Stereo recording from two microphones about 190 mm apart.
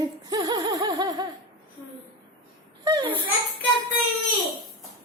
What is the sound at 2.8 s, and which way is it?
Speech, 20° right (ahead or behind).